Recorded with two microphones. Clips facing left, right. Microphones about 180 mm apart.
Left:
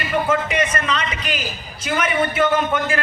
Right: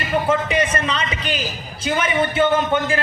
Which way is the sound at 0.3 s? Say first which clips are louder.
Right 1 dB; 30° right (ahead or behind).